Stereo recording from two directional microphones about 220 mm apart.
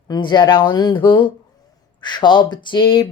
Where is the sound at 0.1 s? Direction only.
20° left (ahead or behind).